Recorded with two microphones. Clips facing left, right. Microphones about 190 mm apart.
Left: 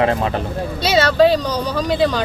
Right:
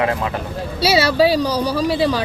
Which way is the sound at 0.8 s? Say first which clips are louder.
Left 1 dB; 10° right (ahead or behind).